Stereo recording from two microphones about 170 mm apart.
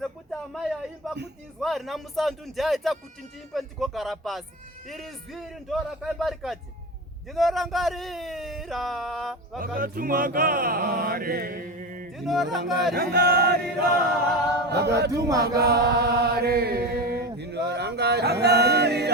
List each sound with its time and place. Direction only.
0.0 s a sound: centre (ahead or behind)
1.6 s speech: centre (ahead or behind)
9.6 s chant: 55° right (ahead or behind)
12.1 s a sound: centre (ahead or behind)
12.7 s chant: 70° right (ahead or behind)
14.7 s chant: 75° right (ahead or behind)
15.1 s chant: 20° right (ahead or behind)
15.5 s mantra: 70° right (ahead or behind)